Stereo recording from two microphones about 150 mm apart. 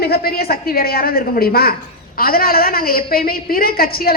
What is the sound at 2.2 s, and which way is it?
A woman's voice, 80° left.